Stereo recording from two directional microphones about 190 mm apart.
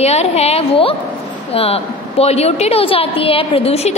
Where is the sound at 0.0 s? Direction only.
35° left (ahead or behind).